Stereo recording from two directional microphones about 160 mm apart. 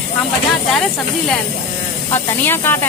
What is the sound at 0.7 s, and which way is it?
Speech, 5° left (ahead or behind).